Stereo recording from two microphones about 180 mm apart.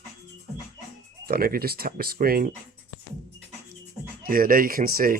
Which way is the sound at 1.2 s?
55° right (ahead or behind).